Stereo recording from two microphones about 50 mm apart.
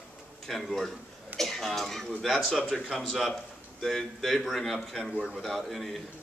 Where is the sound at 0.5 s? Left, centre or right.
Centre.